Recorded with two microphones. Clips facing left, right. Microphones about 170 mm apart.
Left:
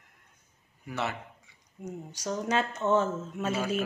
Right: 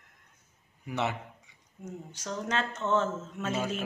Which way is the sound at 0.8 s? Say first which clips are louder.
Right 2 dB; 20° right (ahead or behind).